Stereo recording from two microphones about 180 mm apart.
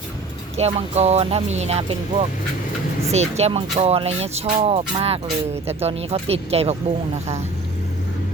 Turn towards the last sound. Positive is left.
turn(degrees=-35)  # may be behind; listen again after turning